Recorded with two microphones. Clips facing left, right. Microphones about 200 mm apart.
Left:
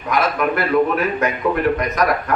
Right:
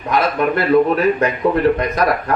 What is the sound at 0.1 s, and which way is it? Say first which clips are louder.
A man's voice: right 2 dB; 30° right (ahead or behind).